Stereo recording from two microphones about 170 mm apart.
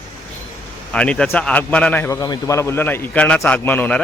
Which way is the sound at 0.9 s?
5° left (ahead or behind).